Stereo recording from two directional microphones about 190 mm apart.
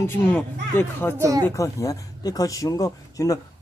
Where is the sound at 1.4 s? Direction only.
15° left (ahead or behind).